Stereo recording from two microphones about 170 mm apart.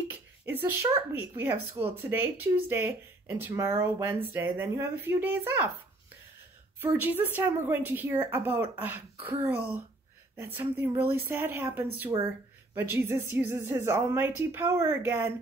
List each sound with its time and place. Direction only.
0.5 s speech: 10° right (ahead or behind)
6.8 s speech: 10° right (ahead or behind)
12.1 s speech: 25° right (ahead or behind)
12.7 s speech: 10° right (ahead or behind)